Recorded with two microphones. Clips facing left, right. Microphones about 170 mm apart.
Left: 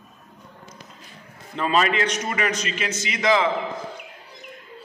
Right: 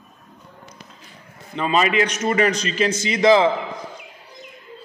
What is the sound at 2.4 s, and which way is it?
A man's voice, 35° right (ahead or behind).